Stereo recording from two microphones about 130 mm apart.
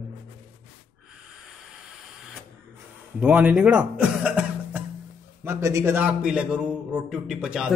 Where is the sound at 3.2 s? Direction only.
10° right (ahead or behind).